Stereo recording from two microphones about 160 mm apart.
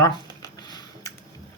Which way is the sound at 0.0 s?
25° left (ahead or behind).